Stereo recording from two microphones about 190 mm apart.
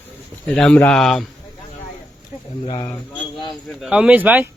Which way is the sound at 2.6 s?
25° left (ahead or behind).